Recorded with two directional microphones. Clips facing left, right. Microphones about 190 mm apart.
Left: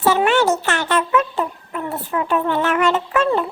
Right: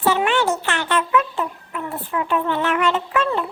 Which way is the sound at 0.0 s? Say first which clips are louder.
Left 3 dB; 45° left (ahead or behind).